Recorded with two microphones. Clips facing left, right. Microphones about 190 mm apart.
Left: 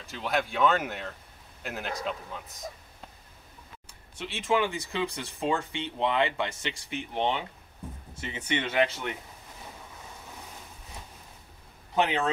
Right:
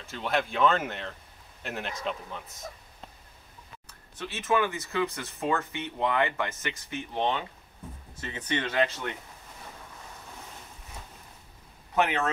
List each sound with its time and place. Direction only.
0.0 s speech: centre (ahead or behind)
4.2 s speech: 15° left (ahead or behind)
11.9 s speech: 15° left (ahead or behind)